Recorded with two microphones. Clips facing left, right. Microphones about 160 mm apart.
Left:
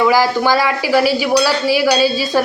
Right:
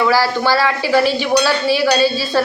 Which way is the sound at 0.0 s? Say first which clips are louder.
Left 2 dB; 15° left (ahead or behind).